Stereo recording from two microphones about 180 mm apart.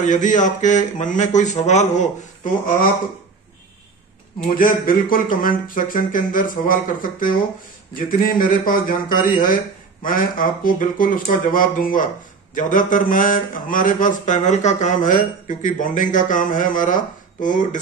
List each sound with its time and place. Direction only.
0.0 s speech: 45° left (ahead or behind)
4.6 s speech: 50° left (ahead or behind)